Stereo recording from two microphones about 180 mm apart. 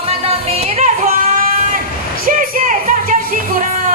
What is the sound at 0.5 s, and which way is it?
Music, 35° right (ahead or behind).